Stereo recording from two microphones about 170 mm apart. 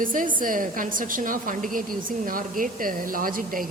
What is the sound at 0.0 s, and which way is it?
A woman's voice, 55° right (ahead or behind).